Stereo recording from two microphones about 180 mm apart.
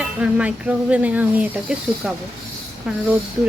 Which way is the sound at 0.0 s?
5° right (ahead or behind).